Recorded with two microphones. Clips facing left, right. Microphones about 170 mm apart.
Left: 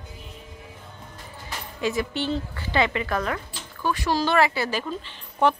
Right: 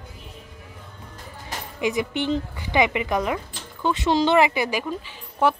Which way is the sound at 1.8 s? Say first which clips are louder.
Right 2 dB; 15° right (ahead or behind).